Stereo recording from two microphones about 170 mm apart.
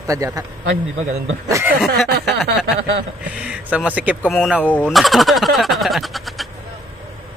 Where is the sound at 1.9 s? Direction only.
Centre (ahead or behind).